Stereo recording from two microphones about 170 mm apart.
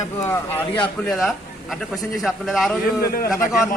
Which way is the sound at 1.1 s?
Centre (ahead or behind).